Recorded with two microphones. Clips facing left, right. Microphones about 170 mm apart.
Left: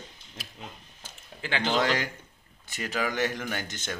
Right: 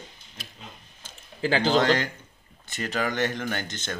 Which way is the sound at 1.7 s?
10° left (ahead or behind).